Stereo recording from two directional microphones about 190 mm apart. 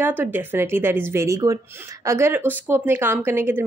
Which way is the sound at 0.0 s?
10° right (ahead or behind).